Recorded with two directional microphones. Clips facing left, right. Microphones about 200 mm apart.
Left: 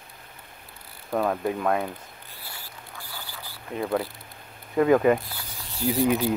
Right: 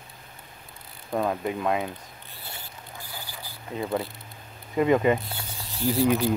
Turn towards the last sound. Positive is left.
turn(degrees=10)  # may be behind; listen again after turning